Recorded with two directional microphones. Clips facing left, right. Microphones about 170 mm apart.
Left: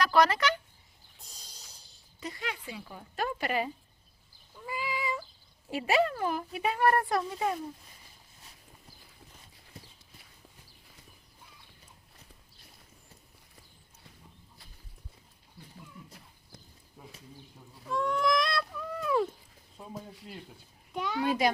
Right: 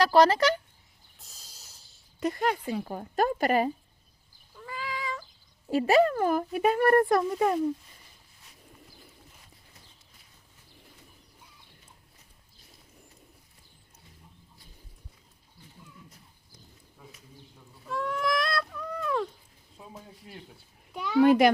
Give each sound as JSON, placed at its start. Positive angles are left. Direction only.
{"t": 0.0, "sound": "speech", "side_deg": -35}
{"t": 1.2, "sound": "a sound", "side_deg": -5}
{"t": 2.2, "sound": "speech", "side_deg": -50}
{"t": 4.5, "sound": "cat", "side_deg": 10}
{"t": 5.7, "sound": "speech", "side_deg": -40}
{"t": 17.8, "sound": "a sound", "side_deg": 0}
{"t": 20.9, "sound": "a child's voice", "side_deg": 0}
{"t": 21.2, "sound": "a child's voice", "side_deg": -60}